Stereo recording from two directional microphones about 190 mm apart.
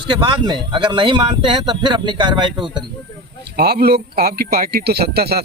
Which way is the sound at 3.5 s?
55° right (ahead or behind).